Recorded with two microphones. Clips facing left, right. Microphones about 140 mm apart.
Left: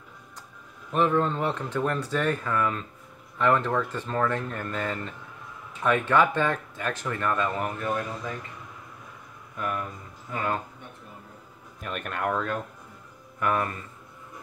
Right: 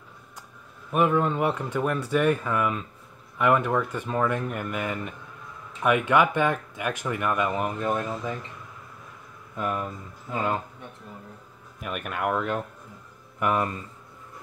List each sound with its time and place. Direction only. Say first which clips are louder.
0.9 s speech: right 1 dB; 10° right (ahead or behind)
9.6 s speech: right 2 dB; 20° right (ahead or behind)
11.8 s speech: right 1 dB; 5° right (ahead or behind)